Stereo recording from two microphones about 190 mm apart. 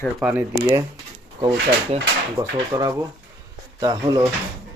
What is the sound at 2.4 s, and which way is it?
Speech, 20° right (ahead or behind).